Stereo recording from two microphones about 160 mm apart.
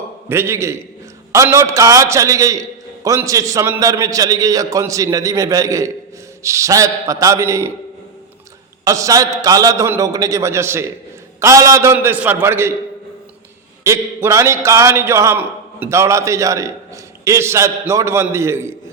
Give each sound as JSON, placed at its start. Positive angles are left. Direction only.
{"t": 0.3, "sound": "a man's voice", "side_deg": -15}
{"t": 8.8, "sound": "a man's voice", "side_deg": -20}
{"t": 13.8, "sound": "a man's voice", "side_deg": -15}